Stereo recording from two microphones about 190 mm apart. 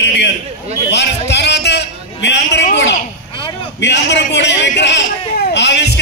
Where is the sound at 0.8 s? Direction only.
65° left (ahead or behind).